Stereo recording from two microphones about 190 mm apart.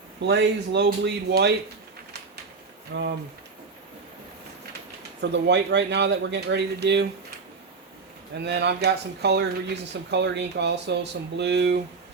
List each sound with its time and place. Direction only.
0.2 s speech: 65° right (ahead or behind)
2.9 s speech: 70° right (ahead or behind)
5.2 s speech: 65° right (ahead or behind)
8.4 s speech: 60° right (ahead or behind)